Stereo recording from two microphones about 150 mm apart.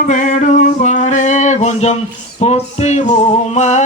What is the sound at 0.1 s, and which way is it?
Music, 55° left (ahead or behind).